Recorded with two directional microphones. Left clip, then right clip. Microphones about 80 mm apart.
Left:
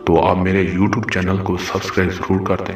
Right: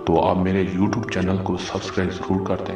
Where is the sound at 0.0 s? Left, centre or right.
Left.